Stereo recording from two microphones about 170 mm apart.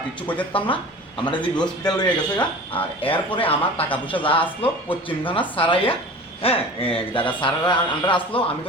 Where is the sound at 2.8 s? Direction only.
10° left (ahead or behind).